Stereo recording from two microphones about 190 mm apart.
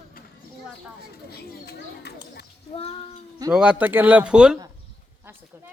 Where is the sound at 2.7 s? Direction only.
30° left (ahead or behind).